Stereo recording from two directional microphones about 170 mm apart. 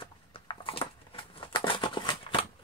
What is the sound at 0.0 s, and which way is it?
Crumpling, 30° left (ahead or behind).